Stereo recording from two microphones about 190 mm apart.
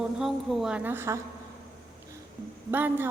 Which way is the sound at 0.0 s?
Centre (ahead or behind).